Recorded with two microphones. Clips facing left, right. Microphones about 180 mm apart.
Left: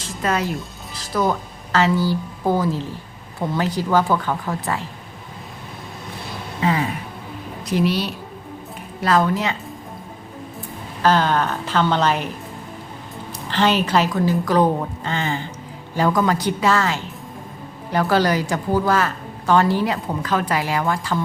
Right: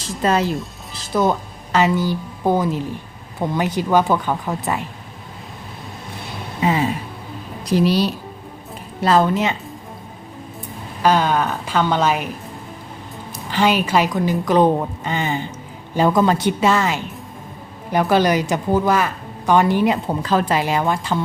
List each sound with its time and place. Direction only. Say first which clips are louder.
0.0 s a woman's voice: right 4 dB; 30° right (ahead or behind)
6.6 s a sound: right 2 dB; 20° right (ahead or behind)
7.6 s a woman's voice: right 4 dB; 35° right (ahead or behind); by 9.6 s 20° right (ahead or behind)
11.0 s a woman's voice: right 1 dB; 10° right (ahead or behind)
13.5 s a woman's voice: right 1 dB; 10° right (ahead or behind)